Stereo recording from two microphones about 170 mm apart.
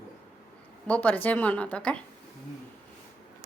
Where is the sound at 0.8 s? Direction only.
10° left (ahead or behind).